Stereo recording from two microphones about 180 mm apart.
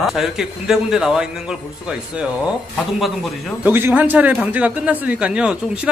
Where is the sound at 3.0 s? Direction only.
Centre (ahead or behind).